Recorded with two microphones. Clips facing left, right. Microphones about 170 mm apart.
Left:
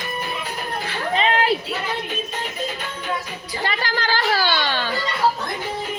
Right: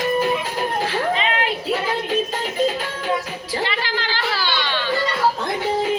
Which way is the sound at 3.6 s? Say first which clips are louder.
Left 3 dB; 45° left (ahead or behind).